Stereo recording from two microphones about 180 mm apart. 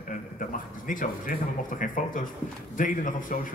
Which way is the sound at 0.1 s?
45° left (ahead or behind).